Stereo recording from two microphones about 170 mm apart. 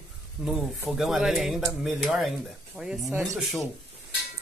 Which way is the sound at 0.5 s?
Centre (ahead or behind).